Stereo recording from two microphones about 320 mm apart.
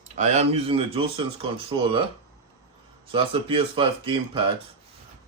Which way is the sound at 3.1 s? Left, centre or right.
Centre.